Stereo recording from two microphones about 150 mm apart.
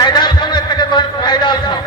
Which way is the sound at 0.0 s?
30° left (ahead or behind).